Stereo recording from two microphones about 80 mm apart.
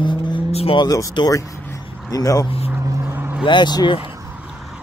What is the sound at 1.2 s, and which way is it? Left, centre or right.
Speech, left.